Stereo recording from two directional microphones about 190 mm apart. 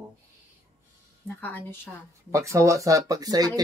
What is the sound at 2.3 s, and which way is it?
Speech, 15° right (ahead or behind).